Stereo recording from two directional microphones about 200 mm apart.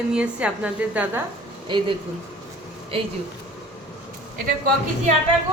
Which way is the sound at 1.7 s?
25° right (ahead or behind).